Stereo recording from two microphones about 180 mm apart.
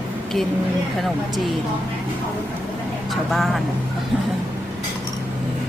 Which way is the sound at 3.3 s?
Centre (ahead or behind).